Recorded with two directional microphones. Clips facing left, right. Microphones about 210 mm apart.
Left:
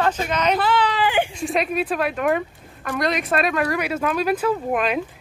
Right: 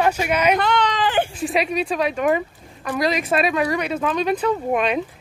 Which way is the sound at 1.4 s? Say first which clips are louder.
Right 1 dB; centre (ahead or behind).